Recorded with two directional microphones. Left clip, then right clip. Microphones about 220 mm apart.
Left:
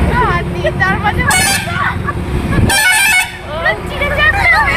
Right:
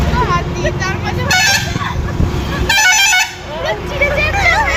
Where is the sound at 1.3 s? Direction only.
Centre (ahead or behind).